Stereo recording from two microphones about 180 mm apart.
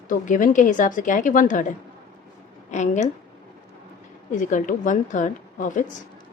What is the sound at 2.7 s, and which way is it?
Speech, 40° left (ahead or behind).